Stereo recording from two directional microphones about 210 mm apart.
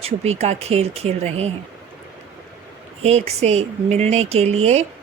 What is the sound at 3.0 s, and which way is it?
Speech, 30° right (ahead or behind).